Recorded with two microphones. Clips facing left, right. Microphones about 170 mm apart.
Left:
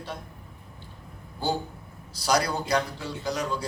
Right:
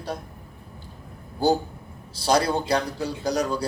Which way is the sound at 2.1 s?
30° right (ahead or behind).